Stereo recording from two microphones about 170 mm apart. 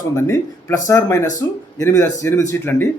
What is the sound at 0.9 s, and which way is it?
Speech, 20° left (ahead or behind).